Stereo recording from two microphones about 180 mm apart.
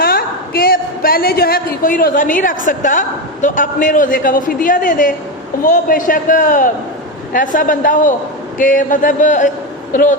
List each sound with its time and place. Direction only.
0.0 s a woman's voice: 60° left (ahead or behind)